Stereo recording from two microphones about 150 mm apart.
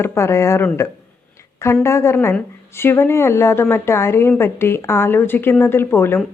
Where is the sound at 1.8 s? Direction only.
20° left (ahead or behind).